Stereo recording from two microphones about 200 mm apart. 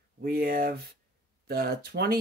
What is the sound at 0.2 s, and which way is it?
Speech, 50° right (ahead or behind).